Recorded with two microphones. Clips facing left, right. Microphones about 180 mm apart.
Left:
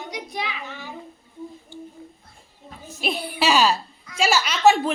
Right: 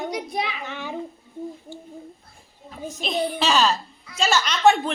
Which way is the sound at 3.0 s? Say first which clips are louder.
Even; 10° left (ahead or behind).